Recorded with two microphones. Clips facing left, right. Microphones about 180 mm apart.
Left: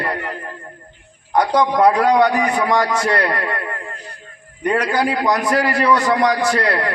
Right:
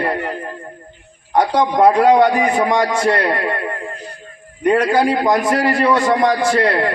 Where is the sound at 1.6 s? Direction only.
25° right (ahead or behind).